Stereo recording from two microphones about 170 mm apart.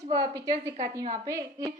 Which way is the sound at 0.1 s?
20° right (ahead or behind).